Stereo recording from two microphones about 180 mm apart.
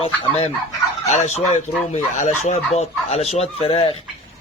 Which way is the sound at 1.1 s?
40° left (ahead or behind).